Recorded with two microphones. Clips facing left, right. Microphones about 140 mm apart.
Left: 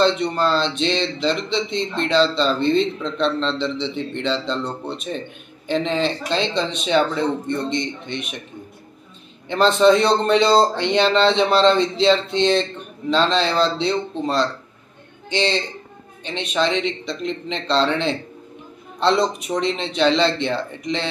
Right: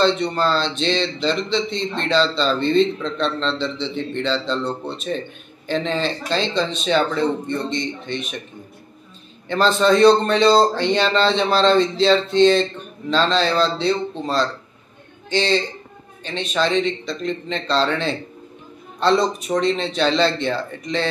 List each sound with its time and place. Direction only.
0.0 s speech: 15° left (ahead or behind)
9.5 s a man's voice: 20° left (ahead or behind)